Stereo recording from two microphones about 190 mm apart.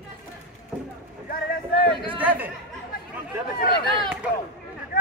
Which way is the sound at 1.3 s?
55° left (ahead or behind).